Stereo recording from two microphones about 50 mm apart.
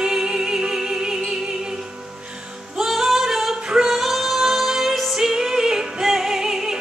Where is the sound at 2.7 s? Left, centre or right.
Centre.